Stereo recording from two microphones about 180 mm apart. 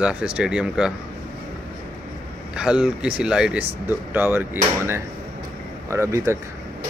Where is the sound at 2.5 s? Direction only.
5° right (ahead or behind).